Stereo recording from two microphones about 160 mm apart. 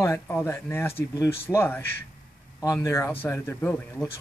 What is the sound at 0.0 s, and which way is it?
Speech, 15° left (ahead or behind).